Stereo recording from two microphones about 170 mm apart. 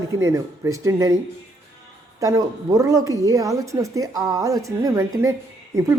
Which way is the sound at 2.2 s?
20° right (ahead or behind).